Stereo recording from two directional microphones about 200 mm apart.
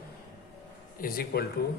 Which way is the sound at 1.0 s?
45° left (ahead or behind).